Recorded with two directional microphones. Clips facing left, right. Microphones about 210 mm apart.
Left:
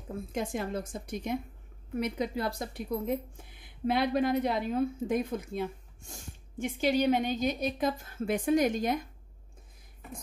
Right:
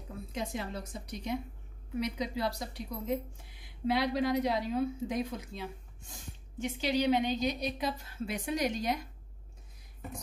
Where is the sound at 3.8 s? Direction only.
55° left (ahead or behind).